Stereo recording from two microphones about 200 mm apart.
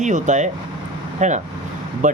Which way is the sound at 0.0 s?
40° right (ahead or behind).